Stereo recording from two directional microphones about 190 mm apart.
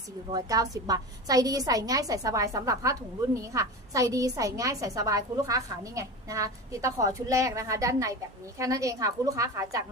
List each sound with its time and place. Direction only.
0.3 s a woman's voice: 20° right (ahead or behind)